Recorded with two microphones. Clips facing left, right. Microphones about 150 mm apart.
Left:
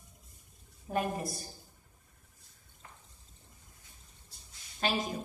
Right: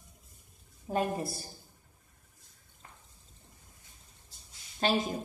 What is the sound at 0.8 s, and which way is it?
Speech, 30° right (ahead or behind).